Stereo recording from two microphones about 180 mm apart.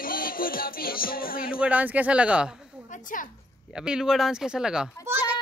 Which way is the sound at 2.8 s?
45° left (ahead or behind).